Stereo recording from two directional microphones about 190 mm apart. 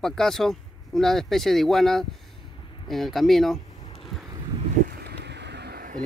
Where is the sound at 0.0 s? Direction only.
Centre (ahead or behind).